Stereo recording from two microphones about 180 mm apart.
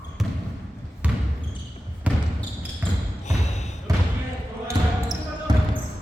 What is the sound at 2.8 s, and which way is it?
Basketball bounce, 10° right (ahead or behind).